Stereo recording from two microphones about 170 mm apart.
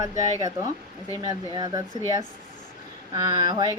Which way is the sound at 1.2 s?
20° right (ahead or behind).